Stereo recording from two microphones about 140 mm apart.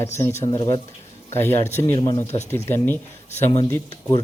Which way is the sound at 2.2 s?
55° left (ahead or behind).